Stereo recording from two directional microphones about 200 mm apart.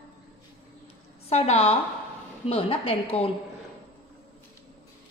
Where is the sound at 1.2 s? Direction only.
30° left (ahead or behind).